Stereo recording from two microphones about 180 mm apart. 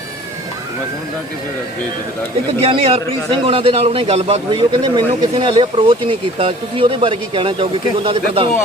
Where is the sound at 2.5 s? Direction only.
30° right (ahead or behind).